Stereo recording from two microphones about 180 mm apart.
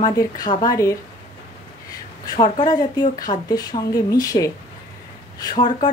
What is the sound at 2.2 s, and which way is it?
Speech, 25° left (ahead or behind).